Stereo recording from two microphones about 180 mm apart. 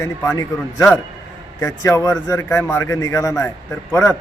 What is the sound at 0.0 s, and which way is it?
A man's voice, 20° left (ahead or behind).